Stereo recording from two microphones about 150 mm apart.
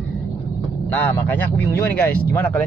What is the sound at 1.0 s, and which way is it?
A man's voice, 10° left (ahead or behind).